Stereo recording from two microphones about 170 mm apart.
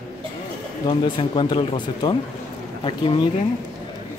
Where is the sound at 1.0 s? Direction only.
25° left (ahead or behind).